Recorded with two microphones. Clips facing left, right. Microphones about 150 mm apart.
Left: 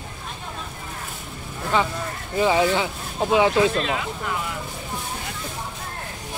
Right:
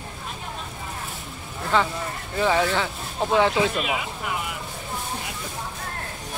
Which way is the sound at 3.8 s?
10° right (ahead or behind).